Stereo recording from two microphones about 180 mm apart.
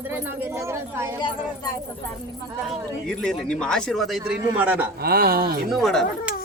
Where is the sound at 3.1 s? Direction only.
5° left (ahead or behind).